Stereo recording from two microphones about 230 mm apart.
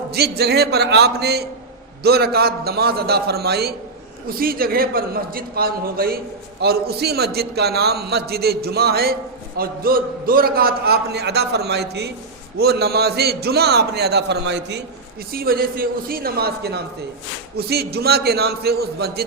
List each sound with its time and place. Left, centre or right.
0.1 s a man's voice: right